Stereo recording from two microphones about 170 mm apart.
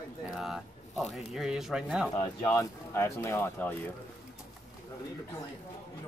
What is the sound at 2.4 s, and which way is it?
Speech, 15° left (ahead or behind).